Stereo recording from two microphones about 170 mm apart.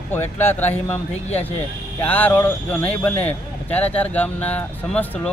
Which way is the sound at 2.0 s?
10° left (ahead or behind).